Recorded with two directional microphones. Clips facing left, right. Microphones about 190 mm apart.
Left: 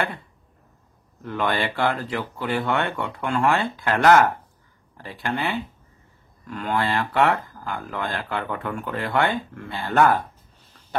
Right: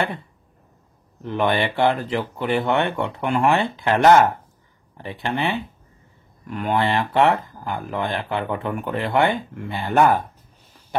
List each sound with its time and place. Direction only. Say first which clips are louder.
1.2 s speech: right 4 dB; 20° right (ahead or behind)